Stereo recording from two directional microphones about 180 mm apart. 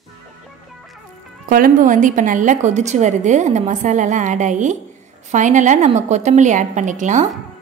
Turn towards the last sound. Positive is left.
turn(degrees=-45)  # may be behind; listen again after turning